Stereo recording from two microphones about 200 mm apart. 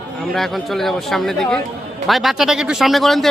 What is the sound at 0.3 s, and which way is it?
A man's voice, centre (ahead or behind).